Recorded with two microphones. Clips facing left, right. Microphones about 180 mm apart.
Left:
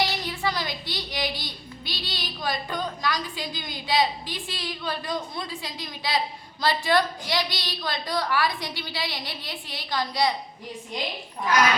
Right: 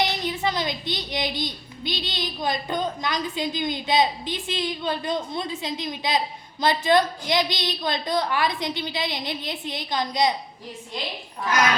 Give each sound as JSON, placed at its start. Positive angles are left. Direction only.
{"t": 0.0, "sound": "a child's voice", "side_deg": -20}